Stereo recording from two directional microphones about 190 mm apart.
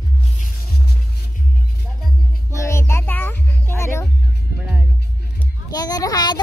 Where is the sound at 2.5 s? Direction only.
15° left (ahead or behind).